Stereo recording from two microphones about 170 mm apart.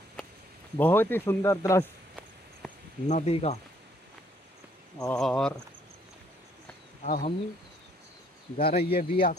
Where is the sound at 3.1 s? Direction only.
40° left (ahead or behind).